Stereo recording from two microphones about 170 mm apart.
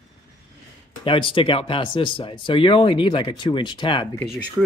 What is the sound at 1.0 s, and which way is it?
Speech, 30° left (ahead or behind).